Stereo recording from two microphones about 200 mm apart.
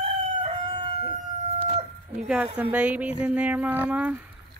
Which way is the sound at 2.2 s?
5° right (ahead or behind).